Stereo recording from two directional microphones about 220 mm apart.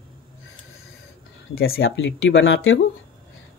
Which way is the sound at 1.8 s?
60° left (ahead or behind).